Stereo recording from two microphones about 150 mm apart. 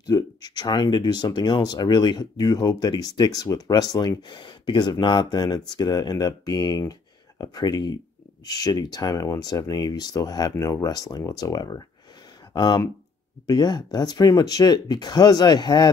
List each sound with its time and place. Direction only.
0.0 s speech: 25° left (ahead or behind)